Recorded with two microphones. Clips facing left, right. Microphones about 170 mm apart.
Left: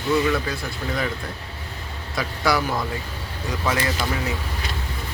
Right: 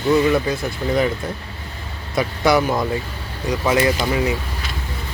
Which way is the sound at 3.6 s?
20° right (ahead or behind).